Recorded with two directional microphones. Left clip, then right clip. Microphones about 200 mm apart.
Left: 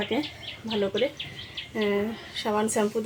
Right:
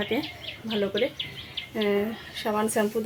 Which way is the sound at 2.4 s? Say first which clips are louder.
Even; 5° right (ahead or behind).